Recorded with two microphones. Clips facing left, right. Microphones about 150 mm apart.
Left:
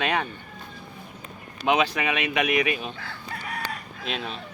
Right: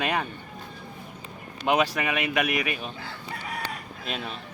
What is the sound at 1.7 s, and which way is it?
Speech, 5° right (ahead or behind).